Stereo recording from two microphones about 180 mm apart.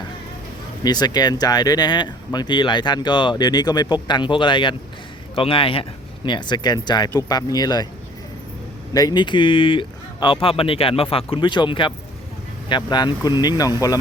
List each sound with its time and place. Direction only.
0.9 s a man's voice: 20° left (ahead or behind)
8.9 s speech: 20° left (ahead or behind)